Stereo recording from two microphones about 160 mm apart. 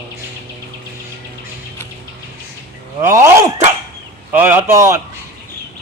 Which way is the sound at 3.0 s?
20° right (ahead or behind).